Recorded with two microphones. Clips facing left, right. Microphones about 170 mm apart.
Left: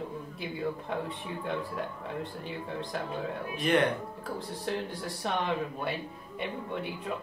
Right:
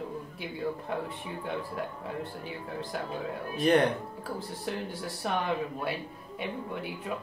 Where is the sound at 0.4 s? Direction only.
Centre (ahead or behind).